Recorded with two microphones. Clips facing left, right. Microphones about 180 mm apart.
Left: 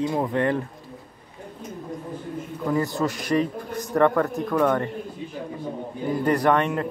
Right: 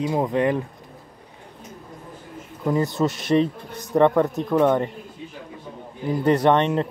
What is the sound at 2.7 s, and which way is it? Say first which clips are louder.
Speech: right 2 dB; 20° right (ahead or behind).